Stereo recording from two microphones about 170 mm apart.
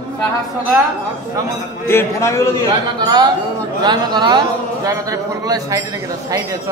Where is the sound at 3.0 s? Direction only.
25° right (ahead or behind).